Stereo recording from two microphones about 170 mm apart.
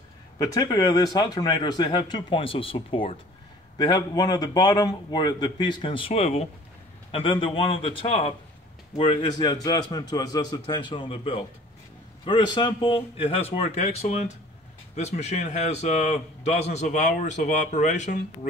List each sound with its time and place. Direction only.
0.4 s a man's voice: 20° left (ahead or behind); by 18.5 s 45° left (ahead or behind)